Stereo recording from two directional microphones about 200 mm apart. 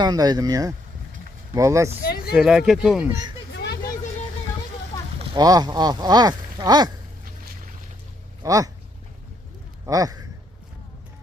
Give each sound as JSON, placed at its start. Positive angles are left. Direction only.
{"t": 0.0, "sound": "speech", "side_deg": -20}
{"t": 2.0, "sound": "a sound", "side_deg": 50}
{"t": 2.3, "sound": "speech", "side_deg": -5}
{"t": 3.5, "sound": "a sound", "side_deg": 55}
{"t": 5.2, "sound": "speech", "side_deg": -25}
{"t": 8.4, "sound": "speech", "side_deg": -15}
{"t": 9.8, "sound": "speech", "side_deg": -15}